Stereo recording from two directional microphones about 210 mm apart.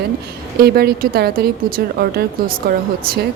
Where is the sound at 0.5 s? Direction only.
45° right (ahead or behind).